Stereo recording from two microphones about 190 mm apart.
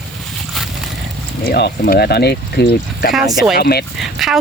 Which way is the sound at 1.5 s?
60° left (ahead or behind).